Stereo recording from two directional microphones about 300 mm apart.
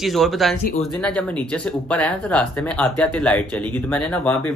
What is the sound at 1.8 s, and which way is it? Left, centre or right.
Speech, centre.